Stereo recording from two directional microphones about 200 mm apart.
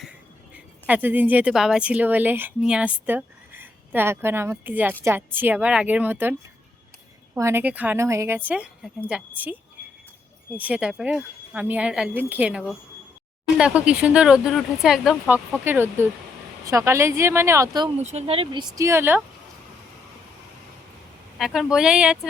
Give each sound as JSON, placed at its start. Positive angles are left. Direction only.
{"t": 0.5, "sound": "a woman's voice", "side_deg": -5}
{"t": 7.3, "sound": "a woman's voice", "side_deg": -10}
{"t": 10.6, "sound": "a woman's voice", "side_deg": -5}
{"t": 18.0, "sound": "speech", "side_deg": -35}
{"t": 21.3, "sound": "speech", "side_deg": 0}